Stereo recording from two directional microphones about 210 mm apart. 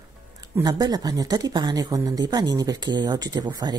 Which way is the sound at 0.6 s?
20° right (ahead or behind).